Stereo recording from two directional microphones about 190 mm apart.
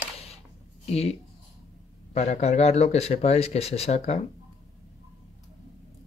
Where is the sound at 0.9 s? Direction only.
35° left (ahead or behind).